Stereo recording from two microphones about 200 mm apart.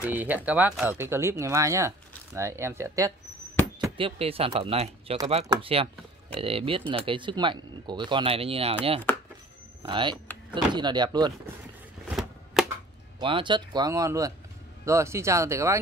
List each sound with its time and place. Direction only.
0.0 s speech: 10° right (ahead or behind)
3.9 s speech: 30° right (ahead or behind)
9.1 s chopping: 5° left (ahead or behind)
9.8 s speech: 25° right (ahead or behind)
12.1 s a sound: centre (ahead or behind)
13.2 s speech: 25° right (ahead or behind)